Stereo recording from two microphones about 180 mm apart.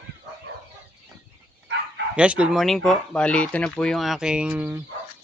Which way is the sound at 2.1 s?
5° right (ahead or behind).